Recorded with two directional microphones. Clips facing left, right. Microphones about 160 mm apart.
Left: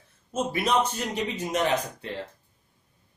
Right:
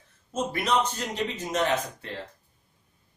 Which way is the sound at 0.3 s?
10° left (ahead or behind).